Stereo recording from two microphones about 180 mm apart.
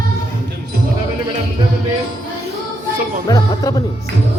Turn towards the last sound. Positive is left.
turn(degrees=20)  # may be behind; listen again after turning